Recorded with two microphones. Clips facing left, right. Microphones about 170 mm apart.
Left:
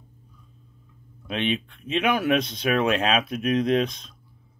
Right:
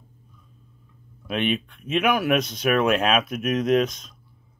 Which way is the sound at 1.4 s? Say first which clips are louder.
Right 1 dB; 45° right (ahead or behind).